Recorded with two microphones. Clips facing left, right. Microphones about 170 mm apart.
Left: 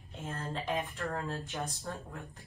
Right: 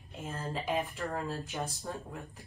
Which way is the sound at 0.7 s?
15° right (ahead or behind).